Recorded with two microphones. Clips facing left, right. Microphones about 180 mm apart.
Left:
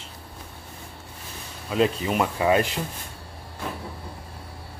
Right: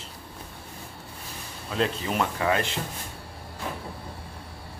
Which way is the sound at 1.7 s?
5° left (ahead or behind).